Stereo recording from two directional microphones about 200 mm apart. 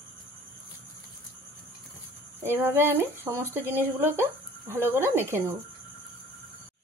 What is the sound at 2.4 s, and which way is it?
Speech, 10° right (ahead or behind).